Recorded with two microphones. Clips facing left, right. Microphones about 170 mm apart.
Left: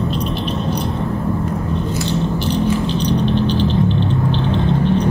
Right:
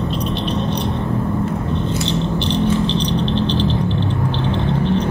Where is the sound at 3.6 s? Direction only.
15° left (ahead or behind).